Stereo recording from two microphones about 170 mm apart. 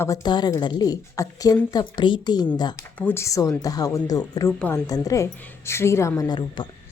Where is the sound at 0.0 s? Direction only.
20° left (ahead or behind).